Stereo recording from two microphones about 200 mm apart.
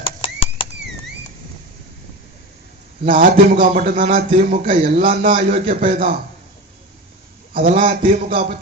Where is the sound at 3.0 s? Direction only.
40° right (ahead or behind).